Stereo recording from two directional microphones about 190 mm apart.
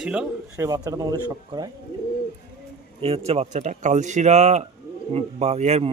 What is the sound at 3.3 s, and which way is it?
Speech, 35° right (ahead or behind).